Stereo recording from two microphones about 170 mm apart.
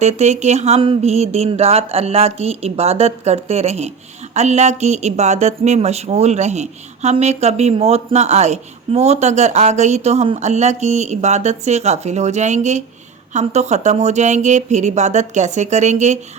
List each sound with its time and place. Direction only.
0.0 s speech: 40° right (ahead or behind)